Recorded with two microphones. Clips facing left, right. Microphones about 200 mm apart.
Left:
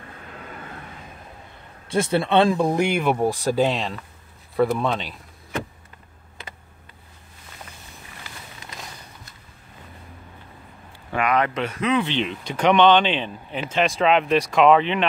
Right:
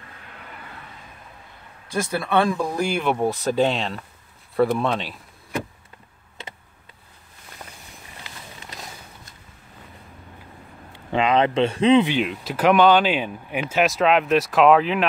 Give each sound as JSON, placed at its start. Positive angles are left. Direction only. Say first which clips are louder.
{"t": 1.9, "sound": "speech", "louder": "left 4 dB", "side_deg": 25}
{"t": 3.0, "sound": "speech", "louder": "left 1 dB", "side_deg": 5}
{"t": 10.9, "sound": "speech", "louder": "right 2 dB", "side_deg": -20}
{"t": 12.0, "sound": "speech", "louder": "right 3 dB", "side_deg": -10}